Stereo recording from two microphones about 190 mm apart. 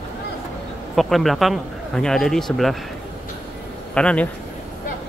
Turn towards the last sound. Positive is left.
turn(degrees=5)  # may be behind; listen again after turning